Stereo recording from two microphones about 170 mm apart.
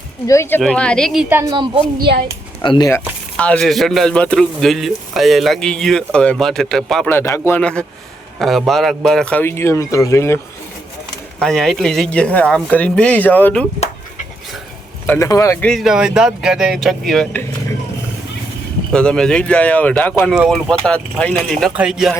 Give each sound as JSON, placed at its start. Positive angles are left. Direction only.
{"t": 0.3, "sound": "speech", "side_deg": 15}
{"t": 0.6, "sound": "a man's voice", "side_deg": 5}
{"t": 1.3, "sound": "a woman's voice", "side_deg": -15}
{"t": 2.6, "sound": "speech", "side_deg": 25}
{"t": 3.3, "sound": "a man's voice", "side_deg": 5}
{"t": 7.2, "sound": "speech", "side_deg": 15}
{"t": 11.3, "sound": "a man's voice", "side_deg": 5}
{"t": 15.0, "sound": "speech", "side_deg": 10}
{"t": 15.6, "sound": "a man's voice", "side_deg": 0}
{"t": 18.9, "sound": "speech", "side_deg": 5}
{"t": 20.3, "sound": "a man's voice", "side_deg": 0}